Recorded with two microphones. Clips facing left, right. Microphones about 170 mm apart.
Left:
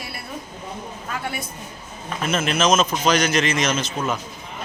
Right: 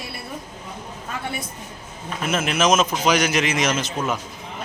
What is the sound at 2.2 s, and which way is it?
A man's voice, 10° right (ahead or behind).